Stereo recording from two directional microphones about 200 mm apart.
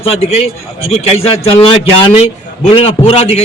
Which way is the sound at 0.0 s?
30° left (ahead or behind).